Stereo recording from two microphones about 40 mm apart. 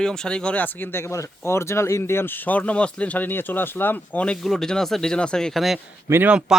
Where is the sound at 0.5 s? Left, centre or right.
Left.